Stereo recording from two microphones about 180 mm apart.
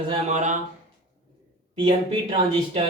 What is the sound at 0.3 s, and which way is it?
Speech, 40° right (ahead or behind).